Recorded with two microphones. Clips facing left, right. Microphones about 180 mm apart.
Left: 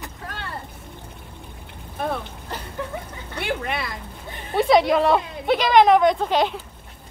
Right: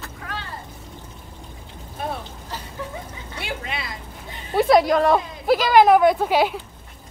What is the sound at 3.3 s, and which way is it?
Speech, 55° left (ahead or behind).